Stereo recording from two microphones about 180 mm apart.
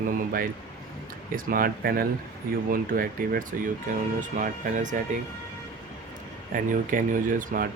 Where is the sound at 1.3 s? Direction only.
50° right (ahead or behind).